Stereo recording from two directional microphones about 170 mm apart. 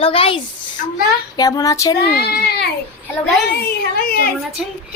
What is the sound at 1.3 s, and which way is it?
Child singing, 20° left (ahead or behind).